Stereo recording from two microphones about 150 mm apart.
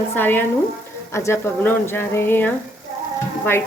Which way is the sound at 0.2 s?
15° left (ahead or behind).